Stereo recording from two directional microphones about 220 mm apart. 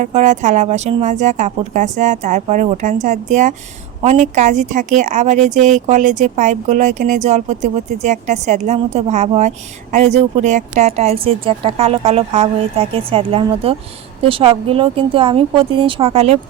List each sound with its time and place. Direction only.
0.0 s a woman's voice: 35° right (ahead or behind)